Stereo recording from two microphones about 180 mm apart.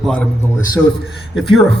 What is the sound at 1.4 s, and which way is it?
Speech, centre (ahead or behind).